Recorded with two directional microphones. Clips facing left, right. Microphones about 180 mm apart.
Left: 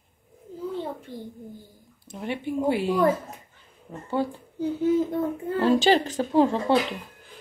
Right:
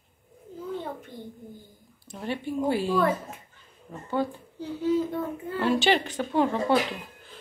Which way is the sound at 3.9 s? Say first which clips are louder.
Left 2 dB; 25° left (ahead or behind).